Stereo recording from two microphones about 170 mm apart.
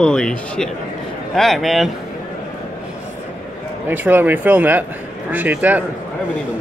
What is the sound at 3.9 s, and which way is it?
Speech, 10° right (ahead or behind).